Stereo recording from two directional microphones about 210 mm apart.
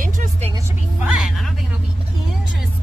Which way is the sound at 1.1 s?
Centre (ahead or behind).